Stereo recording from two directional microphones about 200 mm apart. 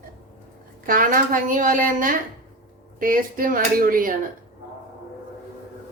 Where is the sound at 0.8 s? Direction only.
45° right (ahead or behind).